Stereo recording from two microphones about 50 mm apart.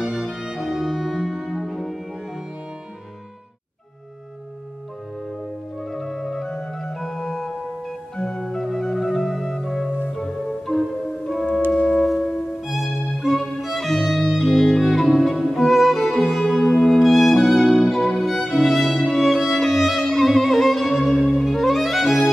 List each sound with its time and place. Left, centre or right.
0.0 s music: centre
0.6 s music: centre
5.8 s organ: centre
8.2 s music: centre
12.4 s violin: centre